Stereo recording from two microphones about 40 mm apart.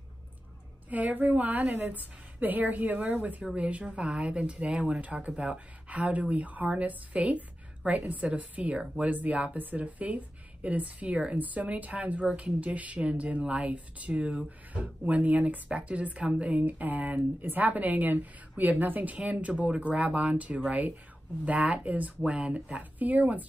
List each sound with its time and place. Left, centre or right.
0.8 s speech: right
3.5 s speech: right
11.3 s speech: right